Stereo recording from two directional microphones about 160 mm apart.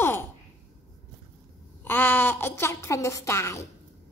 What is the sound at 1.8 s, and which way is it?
A woman's voice, 15° left (ahead or behind).